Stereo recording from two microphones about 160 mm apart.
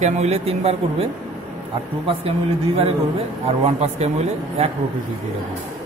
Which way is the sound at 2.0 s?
35° right (ahead or behind).